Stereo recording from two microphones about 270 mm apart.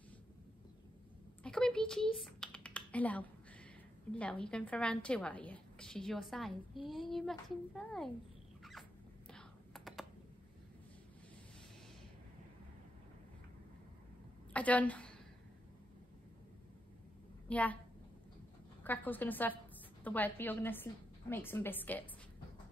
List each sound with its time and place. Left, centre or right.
1.4 s typing: centre
4.1 s a woman's voice: centre
9.3 s computer keyboard: centre
14.5 s a woman's voice: centre
17.5 s a woman's voice: centre
18.9 s a woman's voice: centre